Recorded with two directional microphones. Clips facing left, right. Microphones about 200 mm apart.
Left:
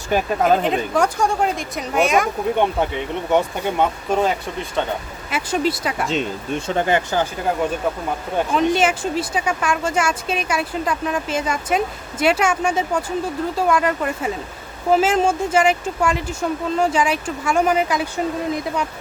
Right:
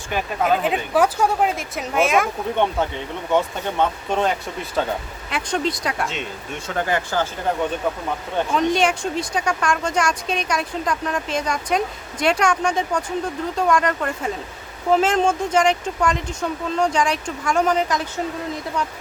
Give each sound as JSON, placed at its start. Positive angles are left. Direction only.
{"t": 0.1, "sound": "speech", "side_deg": 40}
{"t": 0.6, "sound": "speech", "side_deg": -5}
{"t": 2.6, "sound": "speech", "side_deg": 15}
{"t": 6.7, "sound": "speech", "side_deg": 20}
{"t": 8.4, "sound": "speech", "side_deg": 5}